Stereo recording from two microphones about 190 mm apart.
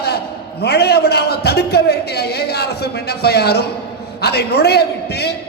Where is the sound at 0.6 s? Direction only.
60° left (ahead or behind).